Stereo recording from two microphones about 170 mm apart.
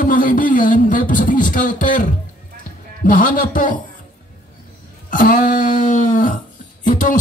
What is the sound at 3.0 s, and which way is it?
Speech, 55° left (ahead or behind).